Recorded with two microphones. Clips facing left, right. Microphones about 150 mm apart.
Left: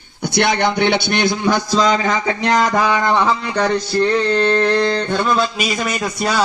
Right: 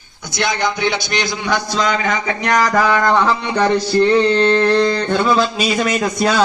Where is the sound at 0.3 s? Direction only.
60° left (ahead or behind); by 3.3 s 20° left (ahead or behind).